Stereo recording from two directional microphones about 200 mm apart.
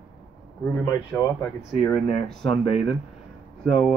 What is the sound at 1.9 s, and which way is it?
Speech, 15° left (ahead or behind).